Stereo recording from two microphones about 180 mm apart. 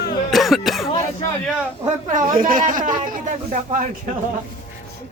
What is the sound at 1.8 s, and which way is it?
Speech, 45° right (ahead or behind).